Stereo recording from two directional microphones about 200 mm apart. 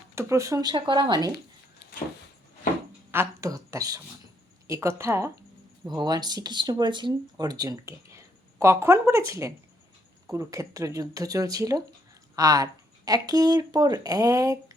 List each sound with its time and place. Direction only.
0.2 s speech: 15° right (ahead or behind)
1.8 s vehicle: 55° left (ahead or behind)
3.1 s speech: 15° right (ahead or behind)